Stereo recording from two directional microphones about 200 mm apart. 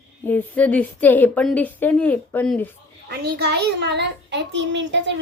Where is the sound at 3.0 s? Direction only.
55° right (ahead or behind).